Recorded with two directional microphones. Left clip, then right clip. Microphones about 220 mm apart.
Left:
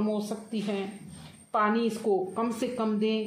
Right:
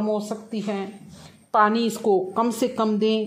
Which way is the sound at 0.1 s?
25° right (ahead or behind).